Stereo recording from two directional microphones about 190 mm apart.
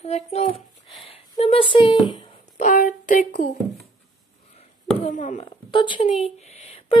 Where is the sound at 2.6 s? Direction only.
45° left (ahead or behind).